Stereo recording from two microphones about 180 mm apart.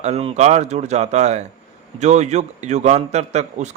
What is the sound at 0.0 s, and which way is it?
A man's voice, 35° right (ahead or behind).